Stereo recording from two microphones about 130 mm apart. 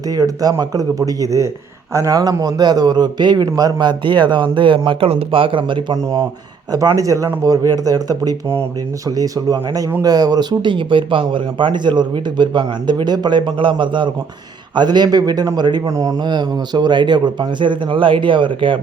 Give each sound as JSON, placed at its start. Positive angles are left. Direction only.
{"t": 0.1, "sound": "speech", "side_deg": -30}
{"t": 6.7, "sound": "speech", "side_deg": -25}